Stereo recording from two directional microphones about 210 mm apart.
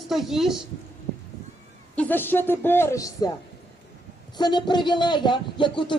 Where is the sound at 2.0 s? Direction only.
10° left (ahead or behind).